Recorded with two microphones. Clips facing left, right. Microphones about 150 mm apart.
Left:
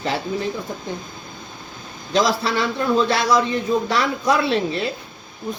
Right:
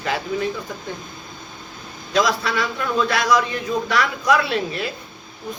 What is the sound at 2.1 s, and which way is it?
A man's voice, 30° left (ahead or behind).